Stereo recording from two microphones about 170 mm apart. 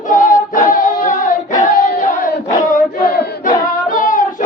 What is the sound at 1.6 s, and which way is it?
Female singing, 50° left (ahead or behind).